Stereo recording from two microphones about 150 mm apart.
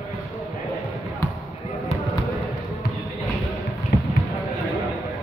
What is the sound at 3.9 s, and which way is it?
Basketball bounce, 90° left.